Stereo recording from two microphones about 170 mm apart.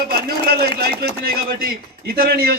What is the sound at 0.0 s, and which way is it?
A man's voice, 65° right (ahead or behind).